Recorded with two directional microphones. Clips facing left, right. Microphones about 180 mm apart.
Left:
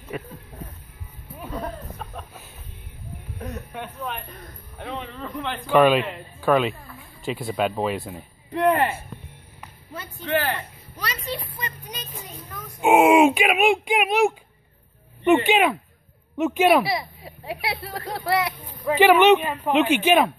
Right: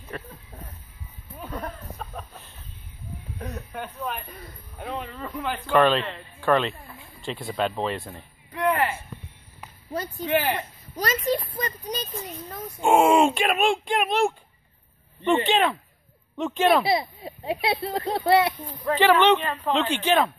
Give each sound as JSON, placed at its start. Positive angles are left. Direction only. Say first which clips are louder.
{"t": 0.1, "sound": "speech", "louder": "left 4 dB", "side_deg": 10}
{"t": 1.3, "sound": "a sound", "louder": "left 3 dB", "side_deg": 5}
{"t": 3.3, "sound": "speech", "louder": "left 1 dB", "side_deg": 0}
{"t": 5.7, "sound": "speech", "louder": "left 3 dB", "side_deg": 10}
{"t": 8.5, "sound": "speech", "louder": "left 4 dB", "side_deg": 25}
{"t": 10.2, "sound": "speech", "louder": "even", "side_deg": -15}
{"t": 11.0, "sound": "speech", "louder": "right 7 dB", "side_deg": -45}
{"t": 12.8, "sound": "speech", "louder": "left 3 dB", "side_deg": 5}
{"t": 15.4, "sound": "speech", "louder": "left 3 dB", "side_deg": 10}
{"t": 16.8, "sound": "speech", "louder": "right 3 dB", "side_deg": -25}
{"t": 18.9, "sound": "speech", "louder": "left 4 dB", "side_deg": 15}